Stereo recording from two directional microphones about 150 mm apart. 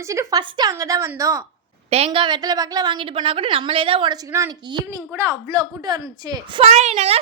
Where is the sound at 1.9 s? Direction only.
40° right (ahead or behind).